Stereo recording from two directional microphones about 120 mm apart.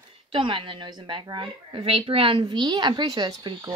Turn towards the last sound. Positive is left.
turn(degrees=-35)  # may be behind; listen again after turning